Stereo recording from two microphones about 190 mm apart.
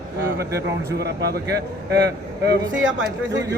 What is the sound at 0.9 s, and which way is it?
Speech, 60° right (ahead or behind).